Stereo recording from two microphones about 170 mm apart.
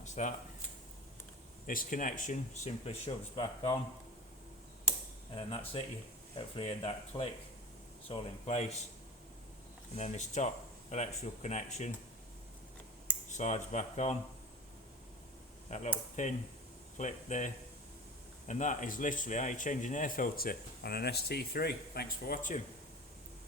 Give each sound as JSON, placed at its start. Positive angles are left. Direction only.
{"t": 0.0, "sound": "a sound", "side_deg": 45}
{"t": 1.6, "sound": "speech", "side_deg": 55}
{"t": 5.3, "sound": "speech", "side_deg": 35}
{"t": 9.9, "sound": "speech", "side_deg": 40}
{"t": 13.3, "sound": "speech", "side_deg": 40}
{"t": 15.7, "sound": "speech", "side_deg": 40}